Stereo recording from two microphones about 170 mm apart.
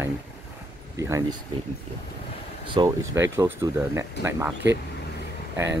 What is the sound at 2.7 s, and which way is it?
Speech, 25° right (ahead or behind).